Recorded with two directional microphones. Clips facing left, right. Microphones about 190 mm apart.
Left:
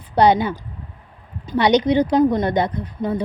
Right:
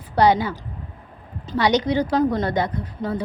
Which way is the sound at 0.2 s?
20° left (ahead or behind).